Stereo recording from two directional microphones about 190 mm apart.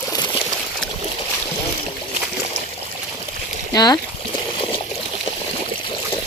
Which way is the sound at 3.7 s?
20° left (ahead or behind).